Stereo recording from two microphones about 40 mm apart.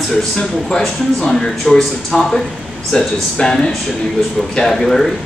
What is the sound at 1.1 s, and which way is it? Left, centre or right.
Speech, centre.